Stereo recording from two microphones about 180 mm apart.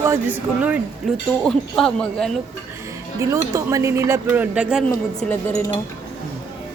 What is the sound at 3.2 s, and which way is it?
Speech, 20° right (ahead or behind).